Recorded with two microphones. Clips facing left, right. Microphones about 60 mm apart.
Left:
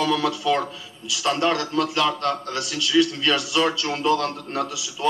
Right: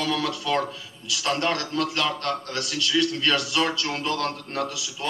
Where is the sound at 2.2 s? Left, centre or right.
Right.